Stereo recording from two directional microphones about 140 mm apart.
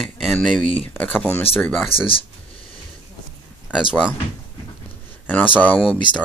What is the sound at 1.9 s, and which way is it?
Speech, 40° left (ahead or behind).